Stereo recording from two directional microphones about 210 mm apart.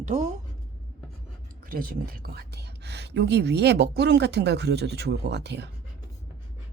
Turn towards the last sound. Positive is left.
turn(degrees=-55)  # may be behind; listen again after turning